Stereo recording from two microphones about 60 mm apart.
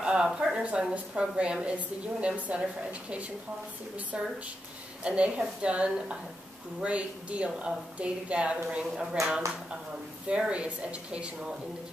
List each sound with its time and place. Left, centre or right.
0.0 s a woman's voice: centre
9.1 s speech: centre
10.4 s a woman's voice: centre